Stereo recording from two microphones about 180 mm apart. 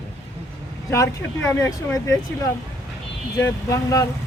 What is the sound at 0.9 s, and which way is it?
Speech, 15° left (ahead or behind).